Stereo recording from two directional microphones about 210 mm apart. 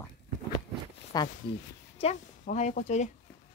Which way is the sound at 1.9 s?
30° left (ahead or behind).